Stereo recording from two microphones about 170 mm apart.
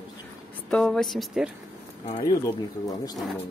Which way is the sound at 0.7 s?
5° left (ahead or behind).